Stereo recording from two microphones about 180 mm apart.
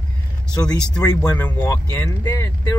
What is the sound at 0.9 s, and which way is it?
Speech, 5° left (ahead or behind).